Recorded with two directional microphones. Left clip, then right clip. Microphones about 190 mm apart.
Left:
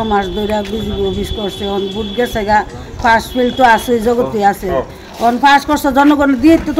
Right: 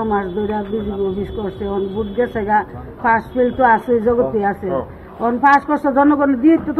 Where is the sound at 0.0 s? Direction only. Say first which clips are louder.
Left 4 dB; 25° left (ahead or behind).